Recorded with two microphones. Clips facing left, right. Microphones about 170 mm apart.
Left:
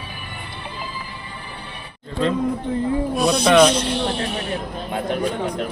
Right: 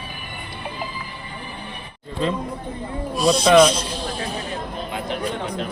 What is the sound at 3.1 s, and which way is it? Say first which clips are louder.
Snake: right 5 dB; 60° left (ahead or behind).